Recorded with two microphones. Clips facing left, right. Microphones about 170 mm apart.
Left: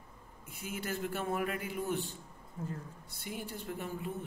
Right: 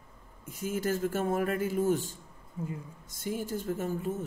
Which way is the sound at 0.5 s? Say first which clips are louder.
Right 8 dB; 45° right (ahead or behind).